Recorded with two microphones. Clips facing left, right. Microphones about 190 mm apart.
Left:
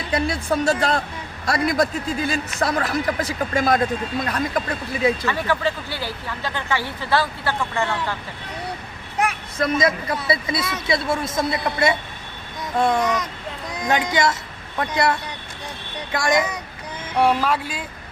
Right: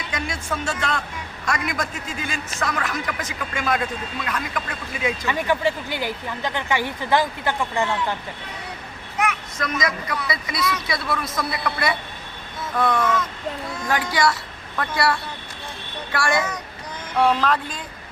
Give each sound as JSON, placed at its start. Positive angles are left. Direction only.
{"t": 0.1, "sound": "speech", "side_deg": 35}
{"t": 5.2, "sound": "speech", "side_deg": -15}
{"t": 9.1, "sound": "a child's voice", "side_deg": 30}